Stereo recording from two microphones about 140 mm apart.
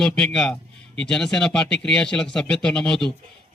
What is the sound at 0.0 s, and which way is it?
Speech, 5° left (ahead or behind).